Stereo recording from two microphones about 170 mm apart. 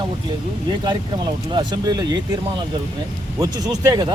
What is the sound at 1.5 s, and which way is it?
Speech, 25° right (ahead or behind).